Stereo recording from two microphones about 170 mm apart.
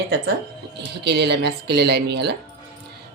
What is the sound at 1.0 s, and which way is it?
Speech, 75° right (ahead or behind).